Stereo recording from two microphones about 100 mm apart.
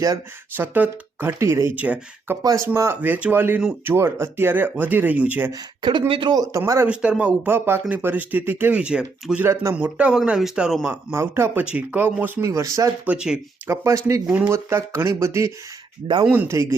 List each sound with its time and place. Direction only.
0.5 s speech: 20° right (ahead or behind)
1.7 s speech: 15° right (ahead or behind)
2.4 s speech: 35° right (ahead or behind)
3.0 s speech: 15° right (ahead or behind)
6.1 s speech: 55° right (ahead or behind)
6.4 s speech: 30° right (ahead or behind)
6.8 s speech: 10° right (ahead or behind)
11.1 s speech: 25° right (ahead or behind)
11.6 s speech: 15° right (ahead or behind)
12.5 s speech: 30° right (ahead or behind)
13.1 s speech: 10° right (ahead or behind)
13.7 s speech: 30° right (ahead or behind)
14.3 s speech: 10° right (ahead or behind)
14.5 s speech: 25° right (ahead or behind)